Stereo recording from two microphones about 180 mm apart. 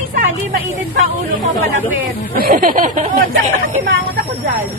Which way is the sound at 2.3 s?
50° right (ahead or behind).